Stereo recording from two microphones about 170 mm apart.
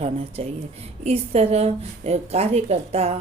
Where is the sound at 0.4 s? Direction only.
35° right (ahead or behind).